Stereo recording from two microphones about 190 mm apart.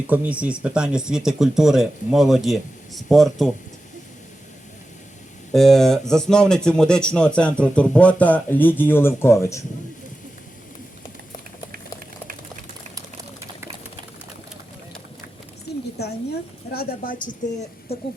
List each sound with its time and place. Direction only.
0.1 s speech: 5° right (ahead or behind)
5.5 s speech: centre (ahead or behind)
15.7 s a sound: 55° left (ahead or behind)
16.7 s speech: 50° left (ahead or behind)